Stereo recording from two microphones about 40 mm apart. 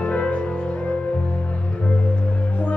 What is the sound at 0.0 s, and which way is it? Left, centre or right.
Music, left.